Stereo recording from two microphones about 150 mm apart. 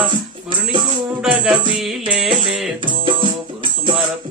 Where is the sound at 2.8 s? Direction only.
35° right (ahead or behind).